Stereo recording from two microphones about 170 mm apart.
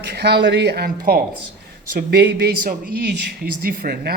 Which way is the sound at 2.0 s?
70° right (ahead or behind).